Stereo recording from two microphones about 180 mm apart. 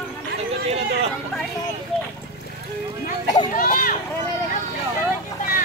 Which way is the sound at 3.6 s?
50° left (ahead or behind).